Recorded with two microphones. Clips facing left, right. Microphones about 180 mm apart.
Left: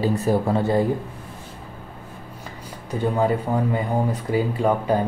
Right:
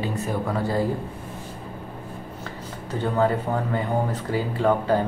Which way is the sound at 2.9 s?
15° left (ahead or behind).